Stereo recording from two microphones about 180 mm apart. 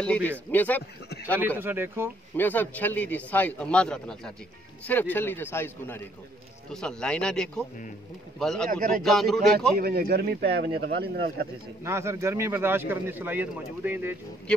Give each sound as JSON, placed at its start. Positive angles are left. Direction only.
{"t": 0.0, "sound": "a man's voice", "side_deg": 5}
{"t": 1.6, "sound": "speech", "side_deg": -10}
{"t": 2.3, "sound": "a man's voice", "side_deg": 10}
{"t": 9.8, "sound": "speech", "side_deg": -60}
{"t": 11.8, "sound": "speech", "side_deg": -15}